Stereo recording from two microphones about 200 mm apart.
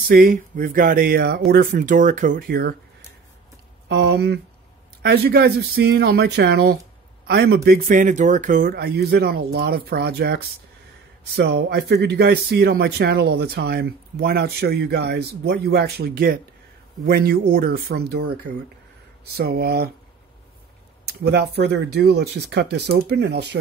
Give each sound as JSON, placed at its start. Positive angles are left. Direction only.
{"t": 0.1, "sound": "speech", "side_deg": -45}
{"t": 3.9, "sound": "speech", "side_deg": -55}
{"t": 19.3, "sound": "speech", "side_deg": -50}
{"t": 21.1, "sound": "speech", "side_deg": -55}